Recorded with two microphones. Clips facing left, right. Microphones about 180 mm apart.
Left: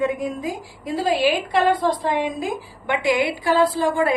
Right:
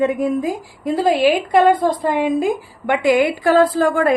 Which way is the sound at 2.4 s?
55° right (ahead or behind).